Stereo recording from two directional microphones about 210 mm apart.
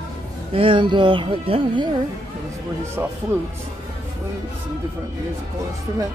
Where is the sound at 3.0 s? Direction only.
15° right (ahead or behind).